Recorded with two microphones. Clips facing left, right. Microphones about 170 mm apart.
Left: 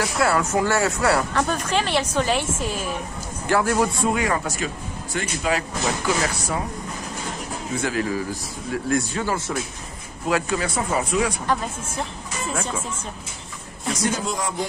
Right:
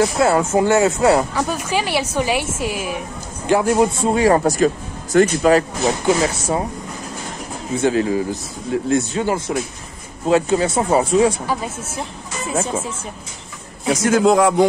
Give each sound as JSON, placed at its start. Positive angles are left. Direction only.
{"t": 0.0, "sound": "speech", "side_deg": -25}
{"t": 1.3, "sound": "speech", "side_deg": -10}
{"t": 4.4, "sound": "speech", "side_deg": -45}
{"t": 6.0, "sound": "speech", "side_deg": -25}
{"t": 7.7, "sound": "speech", "side_deg": -25}
{"t": 11.4, "sound": "speech", "side_deg": -5}
{"t": 13.8, "sound": "a man's voice", "side_deg": -90}